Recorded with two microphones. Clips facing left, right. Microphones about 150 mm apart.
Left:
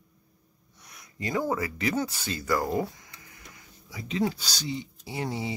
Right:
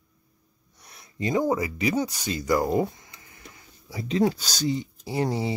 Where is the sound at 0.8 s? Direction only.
30° right (ahead or behind).